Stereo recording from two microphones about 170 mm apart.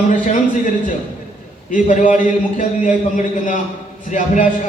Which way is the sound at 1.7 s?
45° left (ahead or behind).